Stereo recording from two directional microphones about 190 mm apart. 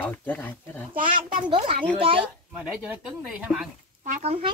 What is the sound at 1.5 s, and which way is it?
Speech, 25° right (ahead or behind).